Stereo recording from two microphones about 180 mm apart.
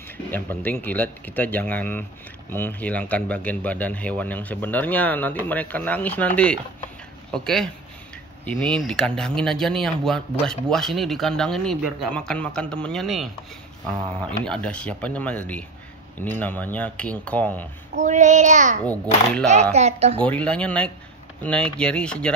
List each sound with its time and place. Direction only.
0.3 s speech: 10° left (ahead or behind)
14.4 s speech: 5° left (ahead or behind)
17.9 s a child's voice: 40° right (ahead or behind)
20.2 s speech: 5° left (ahead or behind)